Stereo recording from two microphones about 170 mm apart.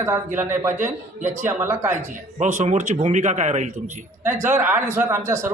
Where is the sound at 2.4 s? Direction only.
45° right (ahead or behind).